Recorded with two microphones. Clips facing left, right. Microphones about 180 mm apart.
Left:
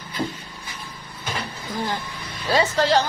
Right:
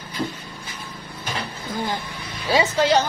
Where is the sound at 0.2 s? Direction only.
25° left (ahead or behind).